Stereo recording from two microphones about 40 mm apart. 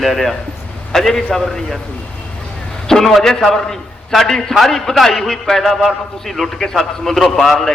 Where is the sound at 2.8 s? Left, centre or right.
Centre.